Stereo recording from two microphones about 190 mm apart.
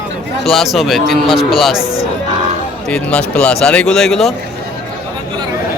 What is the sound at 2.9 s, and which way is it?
Speech, 5° left (ahead or behind).